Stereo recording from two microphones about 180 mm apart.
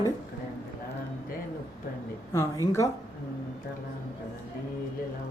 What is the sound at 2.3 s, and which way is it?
Speech, 20° left (ahead or behind).